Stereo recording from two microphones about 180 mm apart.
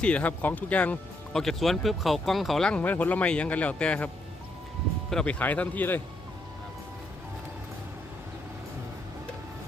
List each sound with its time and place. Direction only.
0.0 s speech: 5° left (ahead or behind)
5.1 s speech: 5° left (ahead or behind)